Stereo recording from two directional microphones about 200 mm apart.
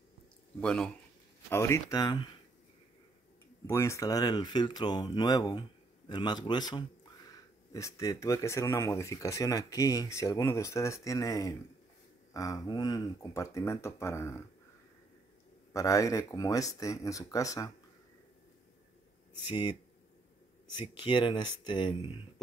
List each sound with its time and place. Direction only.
0.6 s speech: 5° left (ahead or behind); by 2.2 s 20° left (ahead or behind)
3.6 s speech: 15° left (ahead or behind)
15.7 s speech: 15° left (ahead or behind)
19.4 s speech: 20° left (ahead or behind)